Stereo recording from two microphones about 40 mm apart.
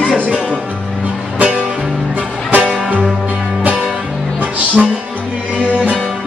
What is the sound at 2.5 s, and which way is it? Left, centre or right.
Music, right.